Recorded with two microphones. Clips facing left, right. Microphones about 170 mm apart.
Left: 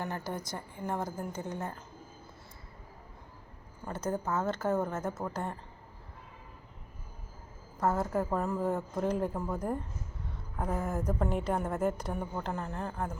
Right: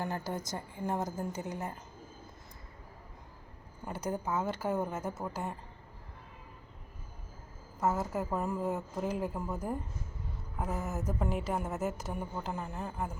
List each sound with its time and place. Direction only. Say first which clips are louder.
0.5 s a woman's voice: right 2 dB; 20° right (ahead or behind)
3.8 s a woman's voice: left 2 dB; 10° right (ahead or behind)
7.8 s a woman's voice: left 2 dB; 10° right (ahead or behind)